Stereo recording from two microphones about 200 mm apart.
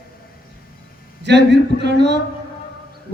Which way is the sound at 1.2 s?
60° right (ahead or behind).